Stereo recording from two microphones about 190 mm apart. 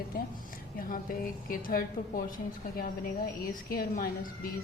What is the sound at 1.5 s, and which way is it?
Speech, 45° left (ahead or behind).